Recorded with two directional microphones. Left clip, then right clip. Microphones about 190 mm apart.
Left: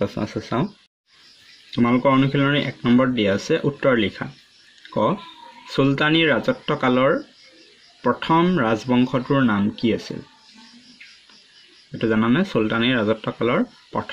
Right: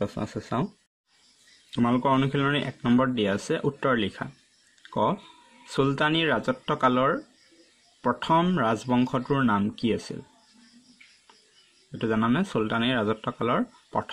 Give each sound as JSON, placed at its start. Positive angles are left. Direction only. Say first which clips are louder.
{"t": 0.0, "sound": "speech", "louder": "left 6 dB", "side_deg": -30}
{"t": 1.7, "sound": "speech", "louder": "left 5 dB", "side_deg": -30}
{"t": 4.8, "sound": "a sound", "louder": "left 4 dB", "side_deg": -30}
{"t": 5.7, "sound": "speech", "louder": "left 5 dB", "side_deg": -30}
{"t": 12.0, "sound": "speech", "louder": "left 6 dB", "side_deg": -30}